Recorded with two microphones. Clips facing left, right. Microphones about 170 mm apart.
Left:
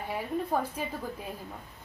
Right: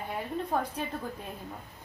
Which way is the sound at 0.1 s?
5° left (ahead or behind).